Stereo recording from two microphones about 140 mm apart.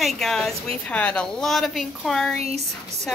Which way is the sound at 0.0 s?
5° left (ahead or behind).